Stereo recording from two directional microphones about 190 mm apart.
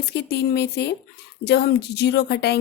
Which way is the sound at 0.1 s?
60° left (ahead or behind).